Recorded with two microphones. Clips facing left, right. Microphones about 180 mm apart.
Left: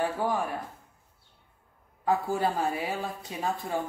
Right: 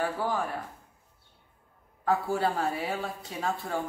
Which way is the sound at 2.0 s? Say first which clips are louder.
Even; 15° left (ahead or behind).